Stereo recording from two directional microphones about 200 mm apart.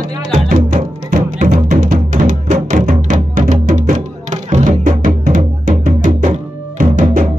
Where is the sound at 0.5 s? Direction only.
40° right (ahead or behind).